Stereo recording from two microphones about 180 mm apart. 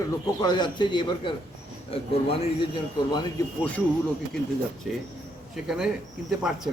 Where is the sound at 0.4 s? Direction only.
25° left (ahead or behind).